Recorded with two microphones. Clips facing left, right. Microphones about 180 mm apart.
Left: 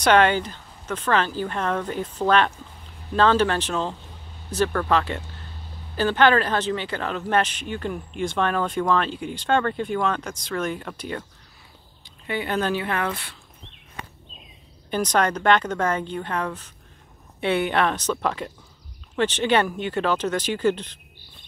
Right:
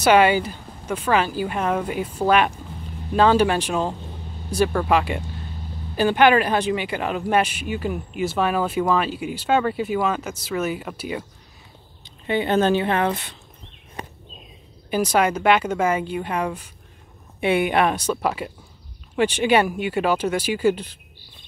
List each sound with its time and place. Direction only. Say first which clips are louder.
0.0 s speech: right 2 dB; 10° right (ahead or behind)
12.0 s speech: right 6 dB; 25° right (ahead or behind)
14.9 s speech: right 2 dB; 10° right (ahead or behind)